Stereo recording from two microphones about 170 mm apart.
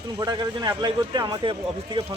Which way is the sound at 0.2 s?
25° right (ahead or behind).